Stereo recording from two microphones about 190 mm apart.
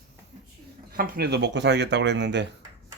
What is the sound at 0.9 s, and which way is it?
Speech, 55° right (ahead or behind).